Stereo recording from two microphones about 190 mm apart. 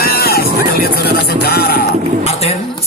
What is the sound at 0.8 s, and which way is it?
Music, 55° left (ahead or behind).